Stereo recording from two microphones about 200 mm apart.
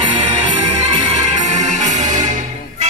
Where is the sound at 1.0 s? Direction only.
35° right (ahead or behind).